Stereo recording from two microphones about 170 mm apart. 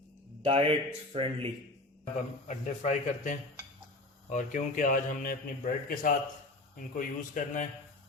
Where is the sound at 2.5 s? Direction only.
45° left (ahead or behind).